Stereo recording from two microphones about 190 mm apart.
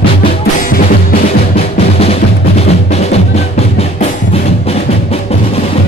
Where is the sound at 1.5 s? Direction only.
30° left (ahead or behind).